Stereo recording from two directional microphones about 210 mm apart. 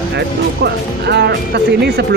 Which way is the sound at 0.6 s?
50° right (ahead or behind).